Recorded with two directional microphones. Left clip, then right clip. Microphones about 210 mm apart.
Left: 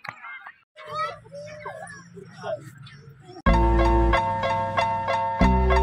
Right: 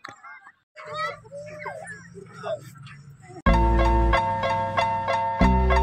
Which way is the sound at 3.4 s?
Centre (ahead or behind).